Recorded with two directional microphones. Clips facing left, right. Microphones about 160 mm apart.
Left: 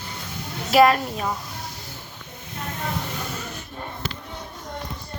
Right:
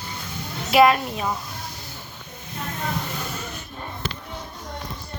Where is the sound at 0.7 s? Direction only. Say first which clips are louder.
Even; 40° left (ahead or behind).